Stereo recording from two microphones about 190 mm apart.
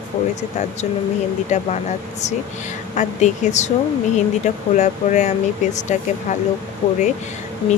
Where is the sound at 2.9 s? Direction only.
40° left (ahead or behind).